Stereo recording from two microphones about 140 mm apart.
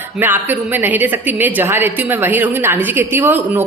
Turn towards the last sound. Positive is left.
turn(degrees=-15)  # may be behind; listen again after turning